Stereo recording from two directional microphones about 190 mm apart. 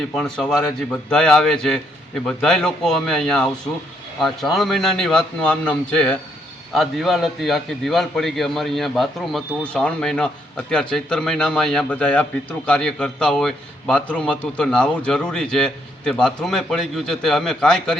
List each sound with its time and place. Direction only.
0.1 s a man's voice: 5° left (ahead or behind)